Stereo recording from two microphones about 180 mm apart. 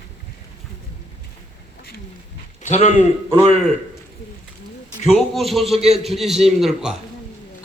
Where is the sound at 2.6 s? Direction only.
40° left (ahead or behind).